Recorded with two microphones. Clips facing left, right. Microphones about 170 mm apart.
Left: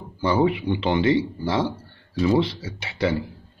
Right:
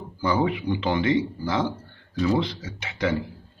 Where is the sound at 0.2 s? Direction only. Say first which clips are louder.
Left 3 dB; 30° left (ahead or behind).